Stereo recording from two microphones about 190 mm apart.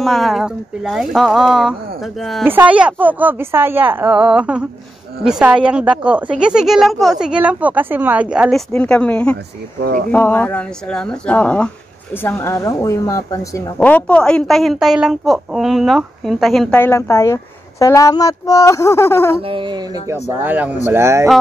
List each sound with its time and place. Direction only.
0.0 s a woman's voice: centre (ahead or behind)
16.8 s speech: 15° left (ahead or behind)
19.4 s speech: 25° right (ahead or behind)
20.1 s speech: 10° right (ahead or behind)